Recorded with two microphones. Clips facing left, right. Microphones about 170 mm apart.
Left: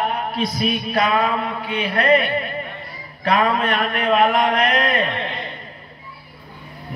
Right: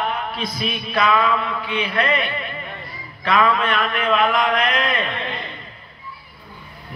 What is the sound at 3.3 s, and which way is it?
Mantra, 40° left (ahead or behind).